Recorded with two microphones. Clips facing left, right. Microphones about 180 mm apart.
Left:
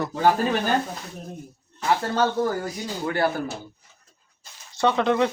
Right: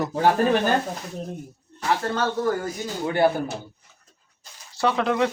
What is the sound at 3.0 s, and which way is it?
Speech, 20° right (ahead or behind).